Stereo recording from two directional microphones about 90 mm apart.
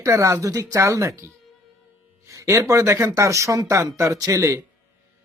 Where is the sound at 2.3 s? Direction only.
35° right (ahead or behind).